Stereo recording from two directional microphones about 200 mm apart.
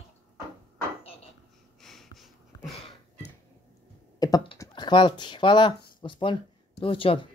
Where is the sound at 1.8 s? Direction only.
Centre (ahead or behind).